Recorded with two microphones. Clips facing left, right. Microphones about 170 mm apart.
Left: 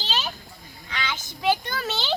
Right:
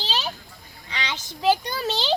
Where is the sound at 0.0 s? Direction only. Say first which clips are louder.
Right 1 dB; 30° right (ahead or behind).